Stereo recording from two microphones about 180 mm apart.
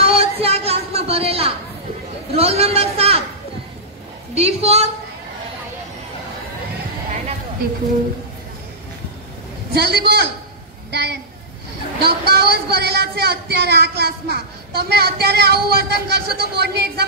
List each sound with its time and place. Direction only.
0.0 s a sound: 35° right (ahead or behind)
2.3 s a man's voice: 35° right (ahead or behind)
4.4 s a man's voice: 35° right (ahead or behind)
9.7 s speech: 65° right (ahead or behind)
10.9 s a sound: 65° right (ahead or behind)
12.0 s speech: 65° right (ahead or behind)